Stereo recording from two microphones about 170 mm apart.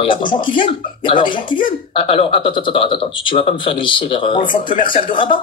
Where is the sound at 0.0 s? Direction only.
30° left (ahead or behind).